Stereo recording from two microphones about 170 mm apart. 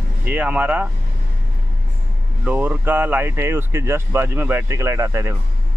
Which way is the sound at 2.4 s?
10° right (ahead or behind).